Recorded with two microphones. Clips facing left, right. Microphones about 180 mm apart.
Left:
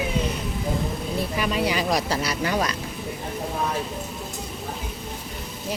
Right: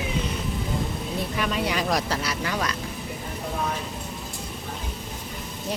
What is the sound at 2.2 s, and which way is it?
Speech, 30° left (ahead or behind).